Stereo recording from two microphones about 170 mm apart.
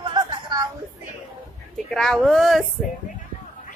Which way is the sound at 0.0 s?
25° right (ahead or behind).